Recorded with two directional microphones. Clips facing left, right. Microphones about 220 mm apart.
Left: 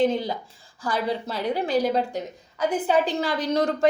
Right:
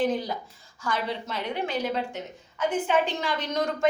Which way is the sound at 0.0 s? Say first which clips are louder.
Left 4 dB; 25° left (ahead or behind).